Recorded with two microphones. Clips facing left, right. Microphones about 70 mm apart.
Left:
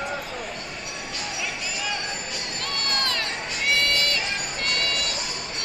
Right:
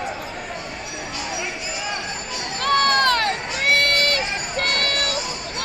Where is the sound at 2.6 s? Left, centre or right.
Right.